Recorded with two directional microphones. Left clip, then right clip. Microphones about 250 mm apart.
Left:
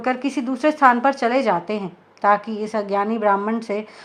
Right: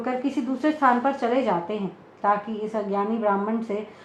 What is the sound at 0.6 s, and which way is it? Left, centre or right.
A woman's voice, left.